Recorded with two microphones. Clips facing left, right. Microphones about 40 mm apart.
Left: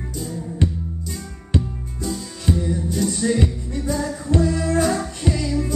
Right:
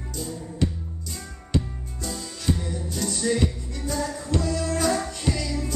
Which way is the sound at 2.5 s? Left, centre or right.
Centre.